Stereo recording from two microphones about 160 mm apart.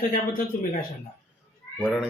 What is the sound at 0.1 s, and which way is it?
Speech, 60° left (ahead or behind).